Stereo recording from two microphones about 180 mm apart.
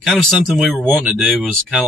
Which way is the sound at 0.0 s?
Centre (ahead or behind).